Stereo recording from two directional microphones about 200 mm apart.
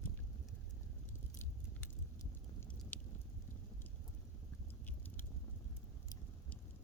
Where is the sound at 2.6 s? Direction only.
5° left (ahead or behind).